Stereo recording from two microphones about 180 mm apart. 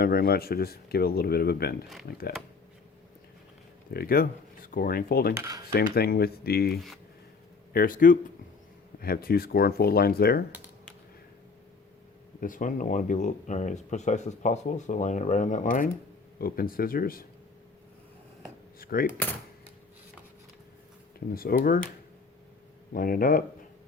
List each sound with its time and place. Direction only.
0.0 s speech: 60° left (ahead or behind)
3.9 s speech: 55° left (ahead or behind)
5.3 s dishes: 15° right (ahead or behind)
5.7 s speech: 60° left (ahead or behind)
12.4 s speech: 50° left (ahead or behind)
18.8 s speech: 55° left (ahead or behind)
21.3 s speech: 55° left (ahead or behind)
22.9 s speech: 50° left (ahead or behind)